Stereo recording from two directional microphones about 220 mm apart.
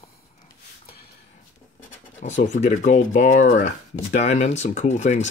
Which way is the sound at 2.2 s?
35° left (ahead or behind).